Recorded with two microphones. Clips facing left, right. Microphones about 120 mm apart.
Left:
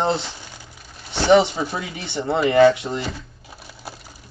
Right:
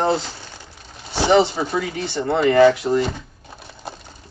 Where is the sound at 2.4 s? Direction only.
25° left (ahead or behind).